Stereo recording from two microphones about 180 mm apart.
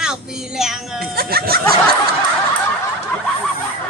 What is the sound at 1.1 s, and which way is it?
Speech, 60° right (ahead or behind).